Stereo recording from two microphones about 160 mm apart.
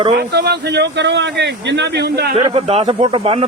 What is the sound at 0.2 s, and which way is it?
Speech, 90° right.